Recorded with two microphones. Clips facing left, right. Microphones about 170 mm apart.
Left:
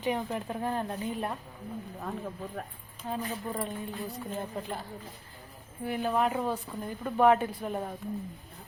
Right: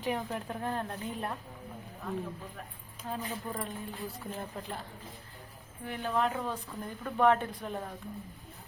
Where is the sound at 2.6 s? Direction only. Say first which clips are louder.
Left 7 dB; 45° left (ahead or behind).